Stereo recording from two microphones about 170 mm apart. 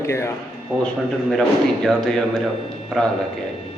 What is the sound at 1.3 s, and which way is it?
Speech, 5° left (ahead or behind).